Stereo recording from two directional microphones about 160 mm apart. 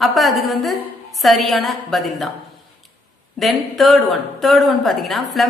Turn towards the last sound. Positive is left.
turn(degrees=0)  # may be behind; listen again after turning